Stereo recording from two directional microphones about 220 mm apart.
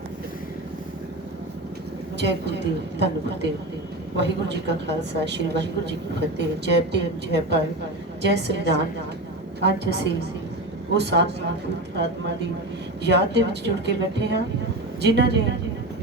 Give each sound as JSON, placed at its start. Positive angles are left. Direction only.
{"t": 2.1, "sound": "a woman's voice", "side_deg": -50}
{"t": 13.1, "sound": "a woman's voice", "side_deg": -50}